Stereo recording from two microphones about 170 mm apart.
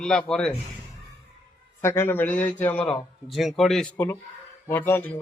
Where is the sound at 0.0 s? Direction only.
5° left (ahead or behind).